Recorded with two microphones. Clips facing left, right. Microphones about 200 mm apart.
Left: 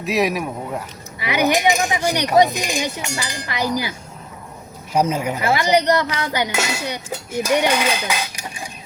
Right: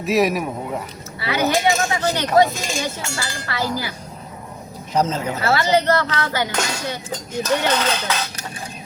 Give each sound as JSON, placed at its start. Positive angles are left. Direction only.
{"t": 0.0, "sound": "speech", "side_deg": 0}
{"t": 1.2, "sound": "speech", "side_deg": 15}
{"t": 4.9, "sound": "speech", "side_deg": 10}